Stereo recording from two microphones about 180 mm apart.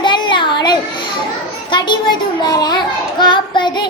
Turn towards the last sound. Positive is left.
turn(degrees=25)  # may be behind; listen again after turning